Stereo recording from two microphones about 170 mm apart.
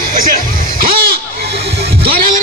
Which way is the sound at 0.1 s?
55° right (ahead or behind).